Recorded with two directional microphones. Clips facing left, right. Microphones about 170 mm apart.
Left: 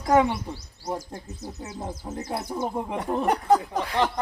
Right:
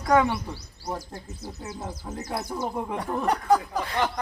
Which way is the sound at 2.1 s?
25° left (ahead or behind).